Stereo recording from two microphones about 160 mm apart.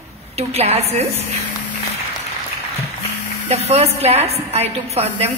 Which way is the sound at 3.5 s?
40° right (ahead or behind).